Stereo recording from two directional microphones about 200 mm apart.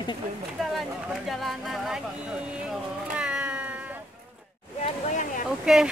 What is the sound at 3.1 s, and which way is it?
Cat, 5° right (ahead or behind).